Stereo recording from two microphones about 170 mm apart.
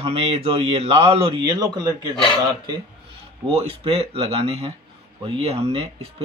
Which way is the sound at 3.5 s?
35° right (ahead or behind).